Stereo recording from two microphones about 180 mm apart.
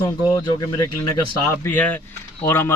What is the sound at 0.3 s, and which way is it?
Speech, 20° left (ahead or behind).